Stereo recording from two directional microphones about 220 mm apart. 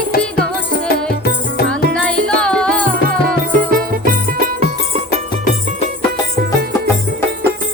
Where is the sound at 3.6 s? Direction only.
40° right (ahead or behind).